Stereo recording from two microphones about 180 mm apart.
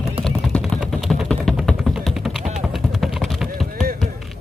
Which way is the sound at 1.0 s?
Centre (ahead or behind).